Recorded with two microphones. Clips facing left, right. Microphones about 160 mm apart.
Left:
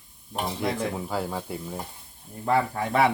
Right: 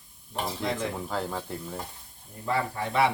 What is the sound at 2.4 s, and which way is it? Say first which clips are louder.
Speech: left 5 dB; 50° left (ahead or behind).